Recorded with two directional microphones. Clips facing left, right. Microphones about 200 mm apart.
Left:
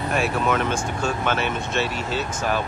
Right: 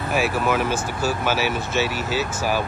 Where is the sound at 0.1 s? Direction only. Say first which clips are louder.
Right 1 dB; 5° right (ahead or behind).